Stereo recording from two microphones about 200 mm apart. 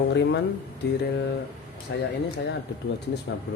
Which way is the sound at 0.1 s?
60° left (ahead or behind).